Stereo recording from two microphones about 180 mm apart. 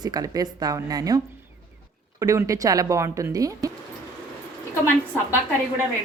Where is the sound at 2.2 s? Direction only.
20° right (ahead or behind).